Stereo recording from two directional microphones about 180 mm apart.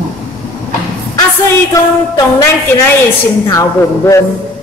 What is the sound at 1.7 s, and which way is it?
Music, 20° left (ahead or behind).